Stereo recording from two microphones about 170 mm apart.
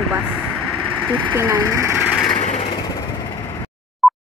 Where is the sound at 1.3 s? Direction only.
10° right (ahead or behind).